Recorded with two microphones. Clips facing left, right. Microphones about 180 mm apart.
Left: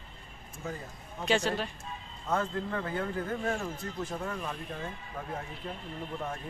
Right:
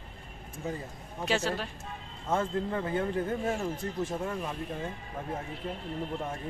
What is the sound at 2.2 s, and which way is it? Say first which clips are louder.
Speech: right 2 dB; 25° right (ahead or behind).